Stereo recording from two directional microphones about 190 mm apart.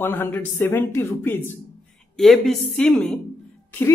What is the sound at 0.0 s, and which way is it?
Speech, 10° left (ahead or behind).